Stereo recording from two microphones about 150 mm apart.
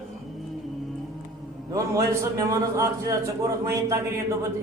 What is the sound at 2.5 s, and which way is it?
A man's voice, 20° right (ahead or behind).